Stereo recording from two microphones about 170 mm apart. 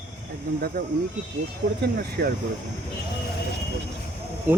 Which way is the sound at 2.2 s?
70° right (ahead or behind).